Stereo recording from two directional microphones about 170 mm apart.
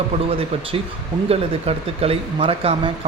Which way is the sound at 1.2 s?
35° right (ahead or behind).